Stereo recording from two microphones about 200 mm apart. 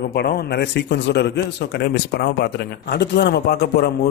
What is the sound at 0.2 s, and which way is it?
Speech, 55° left (ahead or behind).